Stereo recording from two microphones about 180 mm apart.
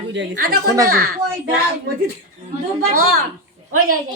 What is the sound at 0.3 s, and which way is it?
Speech, 55° right (ahead or behind).